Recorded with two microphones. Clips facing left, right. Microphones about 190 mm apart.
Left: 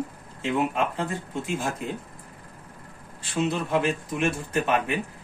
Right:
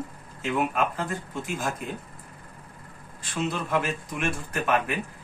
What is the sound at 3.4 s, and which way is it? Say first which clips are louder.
Speech: left 2 dB; 25° left (ahead or behind).